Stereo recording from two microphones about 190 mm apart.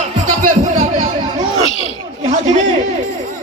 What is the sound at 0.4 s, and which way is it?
Music, 40° right (ahead or behind).